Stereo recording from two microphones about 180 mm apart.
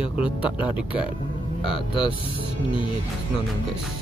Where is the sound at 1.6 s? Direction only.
30° left (ahead or behind).